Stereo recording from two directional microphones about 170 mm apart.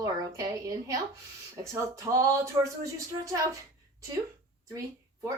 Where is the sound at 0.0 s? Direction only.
20° right (ahead or behind).